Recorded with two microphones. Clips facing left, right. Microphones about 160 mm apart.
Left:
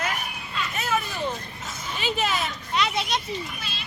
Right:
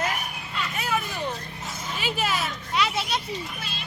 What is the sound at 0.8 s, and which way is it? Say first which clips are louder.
Vehicle: left 1 dB; 10° right (ahead or behind).